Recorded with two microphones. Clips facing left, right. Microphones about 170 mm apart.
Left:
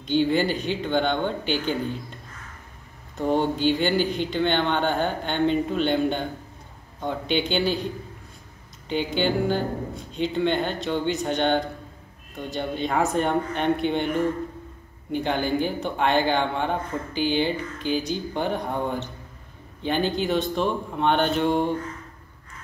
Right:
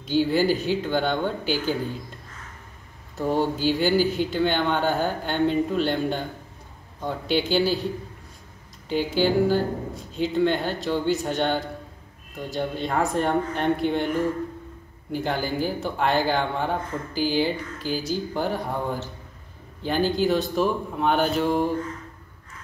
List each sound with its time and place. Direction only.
0.0 s speech: 5° right (ahead or behind)
3.2 s speech: 5° right (ahead or behind)
8.8 s speech: 5° right (ahead or behind)